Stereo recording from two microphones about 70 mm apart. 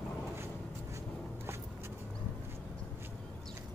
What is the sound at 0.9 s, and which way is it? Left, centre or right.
Writing, right.